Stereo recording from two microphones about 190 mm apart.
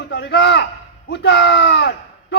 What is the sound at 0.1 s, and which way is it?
A man's voice, 60° left (ahead or behind).